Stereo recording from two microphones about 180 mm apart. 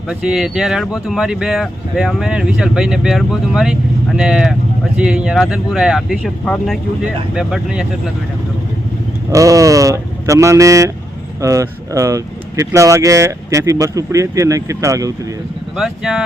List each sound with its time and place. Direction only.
0.1 s speech: 5° right (ahead or behind)
9.3 s speech: 20° right (ahead or behind)
15.7 s speech: 5° right (ahead or behind)